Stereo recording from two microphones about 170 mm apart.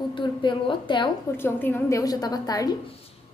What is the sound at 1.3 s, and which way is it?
A woman's voice, 10° left (ahead or behind).